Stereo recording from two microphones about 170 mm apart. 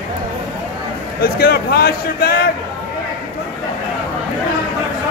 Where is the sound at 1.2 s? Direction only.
65° left (ahead or behind).